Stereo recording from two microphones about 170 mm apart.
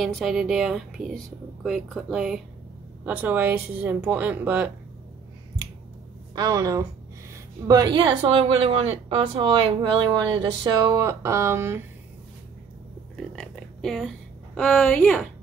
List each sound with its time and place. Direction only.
0.0 s speech: centre (ahead or behind)
6.3 s a woman's voice: 20° right (ahead or behind)
13.1 s a sound: 5° left (ahead or behind)